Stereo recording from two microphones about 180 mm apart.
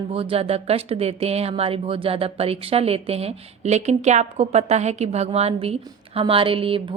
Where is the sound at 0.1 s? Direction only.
30° right (ahead or behind).